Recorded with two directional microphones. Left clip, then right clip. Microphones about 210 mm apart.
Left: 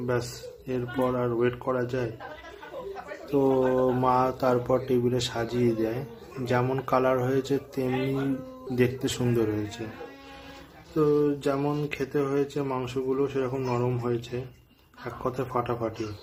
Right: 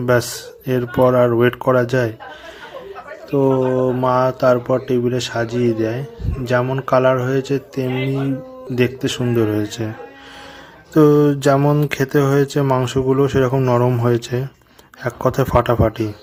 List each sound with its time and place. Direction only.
0.0 s speech: 40° right (ahead or behind)
3.2 s speech: 20° right (ahead or behind)
10.9 s speech: 40° right (ahead or behind)